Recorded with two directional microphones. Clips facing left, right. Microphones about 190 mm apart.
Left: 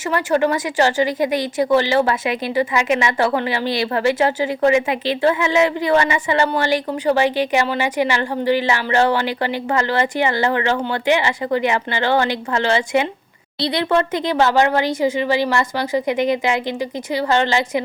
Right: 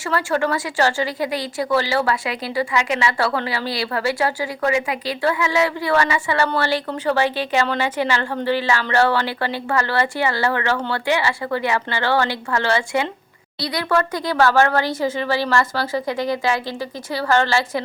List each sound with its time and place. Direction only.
0.1 s speech: 15° left (ahead or behind)